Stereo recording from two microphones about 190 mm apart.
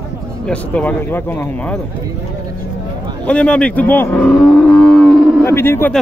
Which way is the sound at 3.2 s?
5° left (ahead or behind).